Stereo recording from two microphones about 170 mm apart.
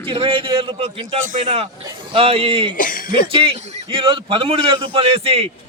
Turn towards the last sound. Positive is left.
turn(degrees=-35)  # may be behind; listen again after turning